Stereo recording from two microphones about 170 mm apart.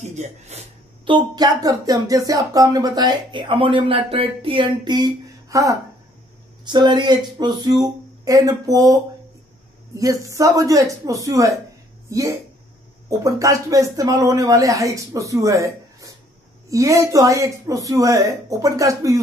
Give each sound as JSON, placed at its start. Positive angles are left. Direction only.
{"t": 0.0, "sound": "speech", "side_deg": -45}
{"t": 1.1, "sound": "speech", "side_deg": -25}